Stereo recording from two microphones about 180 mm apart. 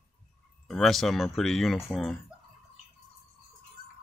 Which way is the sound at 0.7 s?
Centre (ahead or behind).